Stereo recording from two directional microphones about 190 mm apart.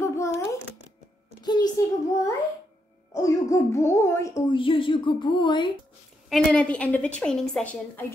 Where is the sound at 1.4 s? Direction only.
20° left (ahead or behind).